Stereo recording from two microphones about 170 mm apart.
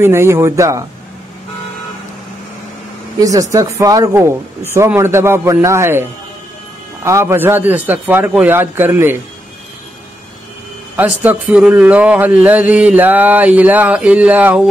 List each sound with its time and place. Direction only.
0.0 s speech: 15° right (ahead or behind)
3.2 s speech: 20° right (ahead or behind)
11.0 s speech: 10° right (ahead or behind)